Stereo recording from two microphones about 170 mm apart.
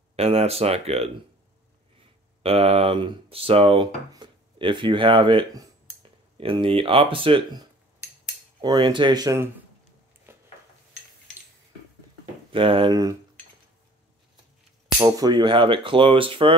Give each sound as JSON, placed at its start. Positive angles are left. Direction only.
{"t": 0.1, "sound": "speech", "side_deg": -35}
{"t": 2.4, "sound": "speech", "side_deg": -35}
{"t": 10.3, "sound": "a sound", "side_deg": -15}
{"t": 12.5, "sound": "speech", "side_deg": -30}
{"t": 15.0, "sound": "speech", "side_deg": -20}